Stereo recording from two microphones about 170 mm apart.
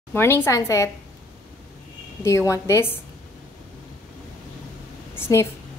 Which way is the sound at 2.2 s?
15° left (ahead or behind).